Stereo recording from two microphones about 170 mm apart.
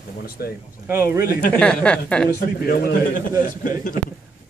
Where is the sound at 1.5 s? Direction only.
5° left (ahead or behind).